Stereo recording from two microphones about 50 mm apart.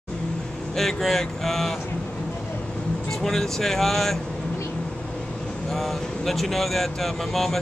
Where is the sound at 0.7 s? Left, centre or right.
Centre.